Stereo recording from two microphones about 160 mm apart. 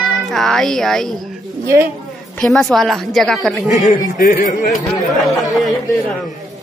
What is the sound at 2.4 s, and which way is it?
A woman's voice, 5° left (ahead or behind).